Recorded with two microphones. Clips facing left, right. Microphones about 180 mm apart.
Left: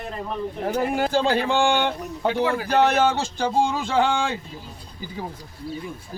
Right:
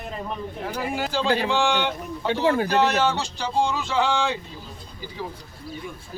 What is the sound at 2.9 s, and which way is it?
A man's voice, 50° left (ahead or behind).